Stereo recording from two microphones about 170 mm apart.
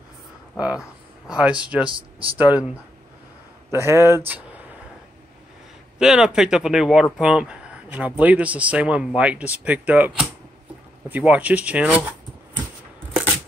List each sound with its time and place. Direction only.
0.6 s speech: 5° right (ahead or behind)
1.9 s speech: 30° right (ahead or behind)
2.3 s speech: 10° right (ahead or behind)
3.7 s speech: 15° right (ahead or behind)
5.9 s speech: 5° right (ahead or behind)